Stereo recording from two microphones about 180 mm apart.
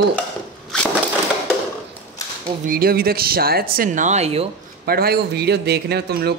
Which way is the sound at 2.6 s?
55° right (ahead or behind).